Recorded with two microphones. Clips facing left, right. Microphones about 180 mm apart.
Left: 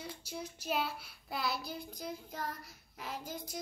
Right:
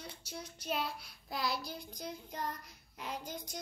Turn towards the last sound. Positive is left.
turn(degrees=5)  # may be behind; listen again after turning